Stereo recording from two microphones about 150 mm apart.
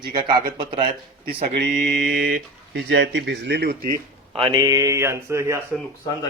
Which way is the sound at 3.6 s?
85° right.